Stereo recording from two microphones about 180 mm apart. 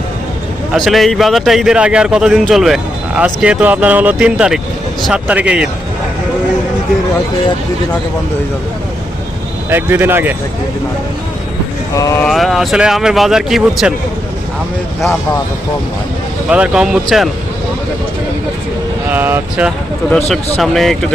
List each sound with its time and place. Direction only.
0.7 s speech: centre (ahead or behind)
9.6 s speech: 10° right (ahead or behind)
11.9 s speech: 20° left (ahead or behind)
12.2 s speech: centre (ahead or behind)
16.5 s speech: 5° right (ahead or behind)
19.1 s speech: 10° right (ahead or behind)
20.1 s speech: 5° left (ahead or behind)